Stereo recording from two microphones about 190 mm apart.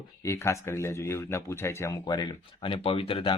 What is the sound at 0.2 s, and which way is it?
Speech, 15° left (ahead or behind).